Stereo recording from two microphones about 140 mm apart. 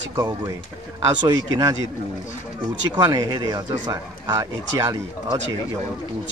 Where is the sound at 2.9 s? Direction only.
30° right (ahead or behind).